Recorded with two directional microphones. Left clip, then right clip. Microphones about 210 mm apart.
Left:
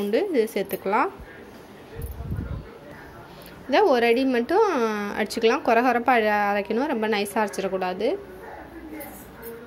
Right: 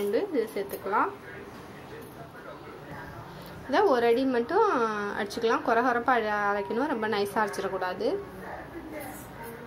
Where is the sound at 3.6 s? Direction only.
30° left (ahead or behind).